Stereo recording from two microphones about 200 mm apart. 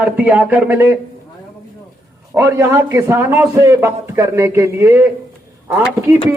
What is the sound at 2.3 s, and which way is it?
A man's voice, 15° right (ahead or behind).